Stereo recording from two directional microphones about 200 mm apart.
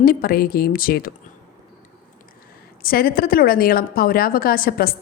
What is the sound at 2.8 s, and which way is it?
A woman's voice, 50° left (ahead or behind).